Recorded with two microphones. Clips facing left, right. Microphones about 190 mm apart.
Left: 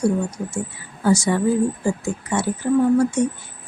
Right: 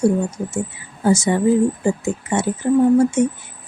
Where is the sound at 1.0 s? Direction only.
20° right (ahead or behind).